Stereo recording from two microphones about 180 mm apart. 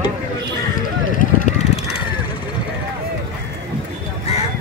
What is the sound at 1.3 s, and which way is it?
Vehicle, 45° left (ahead or behind).